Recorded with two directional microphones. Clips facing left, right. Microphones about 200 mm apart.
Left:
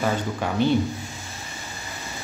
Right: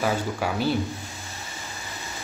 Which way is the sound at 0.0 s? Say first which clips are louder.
Even; 5° right (ahead or behind).